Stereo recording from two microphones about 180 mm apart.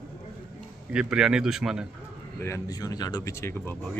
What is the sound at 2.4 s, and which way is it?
Speech, 15° left (ahead or behind).